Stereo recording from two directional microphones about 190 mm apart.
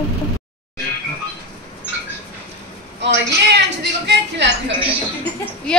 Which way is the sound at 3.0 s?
65° right (ahead or behind).